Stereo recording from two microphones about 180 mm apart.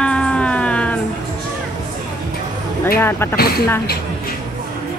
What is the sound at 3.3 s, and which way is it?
Speech, 60° left (ahead or behind).